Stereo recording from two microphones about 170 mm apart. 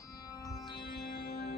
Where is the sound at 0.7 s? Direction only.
65° left (ahead or behind).